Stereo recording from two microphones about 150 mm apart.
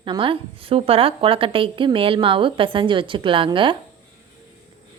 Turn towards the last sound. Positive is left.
turn(degrees=-35)  # may be behind; listen again after turning